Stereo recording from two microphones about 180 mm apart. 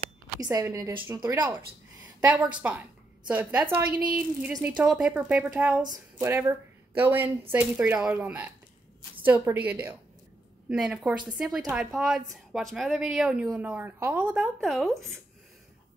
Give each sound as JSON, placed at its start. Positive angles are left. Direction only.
{"t": 0.4, "sound": "speech", "side_deg": -20}
{"t": 2.2, "sound": "speech", "side_deg": -5}